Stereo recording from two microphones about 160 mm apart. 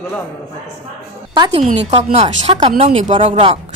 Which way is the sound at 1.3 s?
30° right (ahead or behind).